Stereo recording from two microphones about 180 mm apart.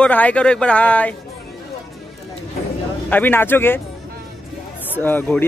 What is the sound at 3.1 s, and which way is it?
Speech, 10° left (ahead or behind).